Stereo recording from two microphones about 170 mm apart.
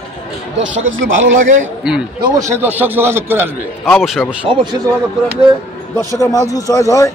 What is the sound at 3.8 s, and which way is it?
Speech, centre (ahead or behind).